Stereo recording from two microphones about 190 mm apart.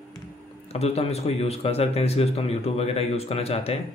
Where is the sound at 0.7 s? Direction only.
35° left (ahead or behind).